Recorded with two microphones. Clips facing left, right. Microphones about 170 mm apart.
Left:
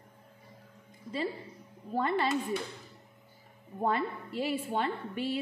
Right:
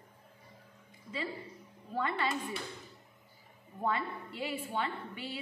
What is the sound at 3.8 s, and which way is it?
A woman's voice, 45° left (ahead or behind).